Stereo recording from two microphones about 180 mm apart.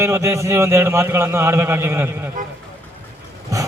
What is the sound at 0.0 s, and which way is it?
A man's voice, 15° right (ahead or behind).